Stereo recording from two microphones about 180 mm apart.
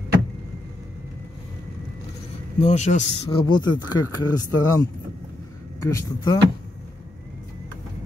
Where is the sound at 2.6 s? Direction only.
40° left (ahead or behind).